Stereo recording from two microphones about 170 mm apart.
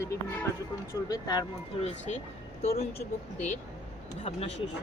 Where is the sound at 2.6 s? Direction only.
35° left (ahead or behind).